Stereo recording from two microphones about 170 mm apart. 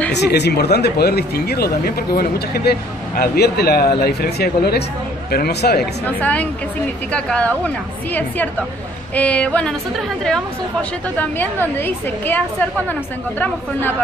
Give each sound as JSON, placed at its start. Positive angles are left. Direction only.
{"t": 0.1, "sound": "speech", "side_deg": 80}
{"t": 6.0, "sound": "a woman's voice", "side_deg": 10}